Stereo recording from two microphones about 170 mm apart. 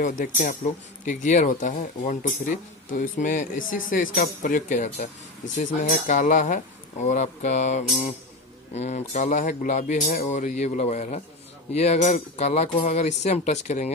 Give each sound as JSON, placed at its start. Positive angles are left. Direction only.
{"t": 0.0, "sound": "speech", "side_deg": 50}